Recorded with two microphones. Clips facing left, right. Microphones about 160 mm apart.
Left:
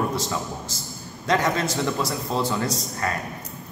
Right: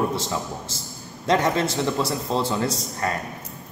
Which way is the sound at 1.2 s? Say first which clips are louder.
Right 2 dB; 25° right (ahead or behind).